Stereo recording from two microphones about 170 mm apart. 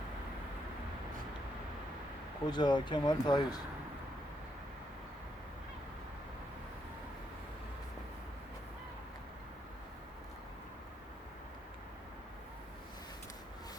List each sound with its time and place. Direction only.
2.5 s speech: 25° left (ahead or behind)